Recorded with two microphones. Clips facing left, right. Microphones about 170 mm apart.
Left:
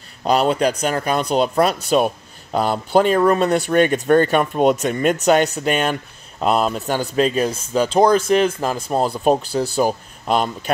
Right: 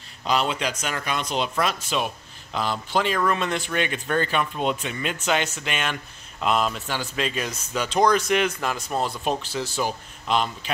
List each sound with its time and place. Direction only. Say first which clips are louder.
0.2 s speech: left 8 dB; 40° left (ahead or behind)
9.1 s speech: left 9 dB; 45° left (ahead or behind)